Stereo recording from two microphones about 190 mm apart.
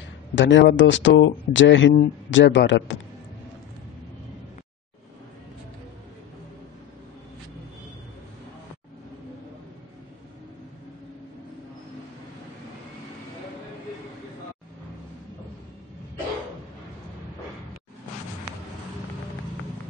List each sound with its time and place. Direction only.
0.4 s speech: 70° left (ahead or behind)